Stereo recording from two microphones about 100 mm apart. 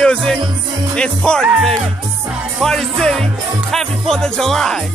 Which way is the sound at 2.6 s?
5° left (ahead or behind).